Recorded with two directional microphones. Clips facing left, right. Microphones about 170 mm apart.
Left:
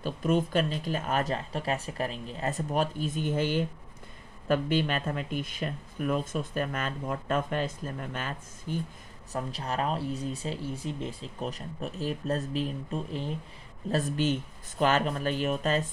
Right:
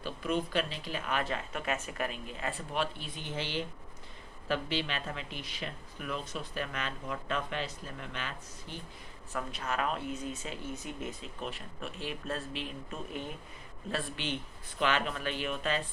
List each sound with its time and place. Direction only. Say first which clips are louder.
0.0 s speech: left 6 dB; 45° left (ahead or behind)